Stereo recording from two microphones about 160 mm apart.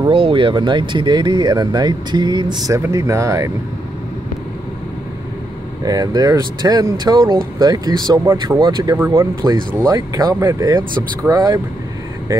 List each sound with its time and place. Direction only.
0.0 s speech: 30° right (ahead or behind)
5.9 s speech: 25° right (ahead or behind)